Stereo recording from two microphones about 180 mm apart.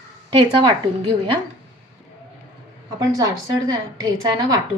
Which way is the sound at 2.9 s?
20° right (ahead or behind).